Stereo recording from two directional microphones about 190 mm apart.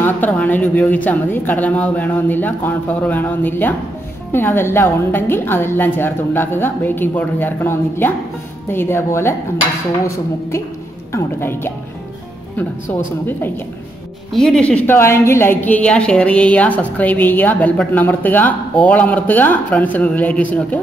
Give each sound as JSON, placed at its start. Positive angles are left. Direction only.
{"t": 0.0, "sound": "a woman's voice", "side_deg": 10}
{"t": 14.3, "sound": "a woman's voice", "side_deg": 0}